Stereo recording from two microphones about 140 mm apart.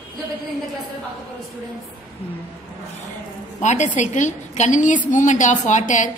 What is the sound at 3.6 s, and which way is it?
A woman's voice, 55° left (ahead or behind).